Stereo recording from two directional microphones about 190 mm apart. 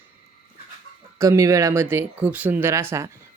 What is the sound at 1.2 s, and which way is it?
Speech, 15° right (ahead or behind).